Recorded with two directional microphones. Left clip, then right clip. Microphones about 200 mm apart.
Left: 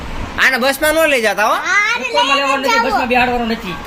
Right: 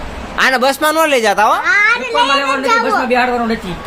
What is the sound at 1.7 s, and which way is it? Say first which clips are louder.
A child's voice: right 3 dB; 5° right (ahead or behind).